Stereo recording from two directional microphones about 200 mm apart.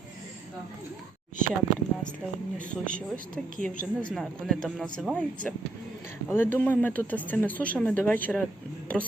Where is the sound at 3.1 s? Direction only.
45° right (ahead or behind).